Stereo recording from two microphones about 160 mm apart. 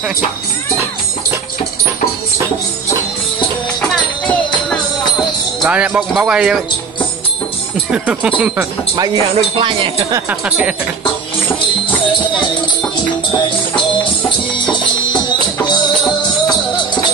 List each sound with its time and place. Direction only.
5.2 s speech: 5° right (ahead or behind)
7.9 s speech: 5° right (ahead or behind)
8.9 s speech: 25° right (ahead or behind)
15.2 s music: 30° left (ahead or behind)